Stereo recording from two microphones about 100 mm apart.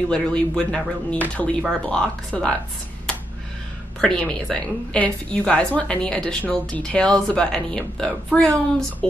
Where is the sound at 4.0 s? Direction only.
10° left (ahead or behind).